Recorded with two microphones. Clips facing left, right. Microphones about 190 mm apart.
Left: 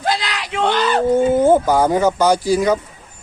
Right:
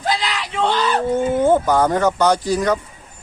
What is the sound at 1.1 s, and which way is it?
Speech, 10° left (ahead or behind).